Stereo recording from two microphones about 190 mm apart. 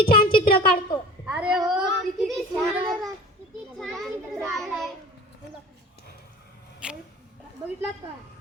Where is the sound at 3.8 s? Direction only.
Centre (ahead or behind).